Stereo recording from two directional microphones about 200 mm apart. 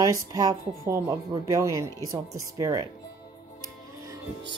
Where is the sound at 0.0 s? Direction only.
20° right (ahead or behind).